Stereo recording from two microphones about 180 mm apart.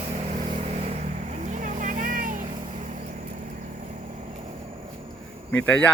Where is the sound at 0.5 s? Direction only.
35° right (ahead or behind).